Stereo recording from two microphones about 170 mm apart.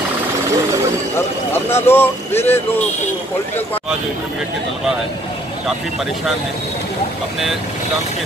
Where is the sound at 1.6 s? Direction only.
15° left (ahead or behind).